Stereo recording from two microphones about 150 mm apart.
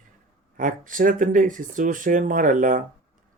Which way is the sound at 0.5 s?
65° right (ahead or behind).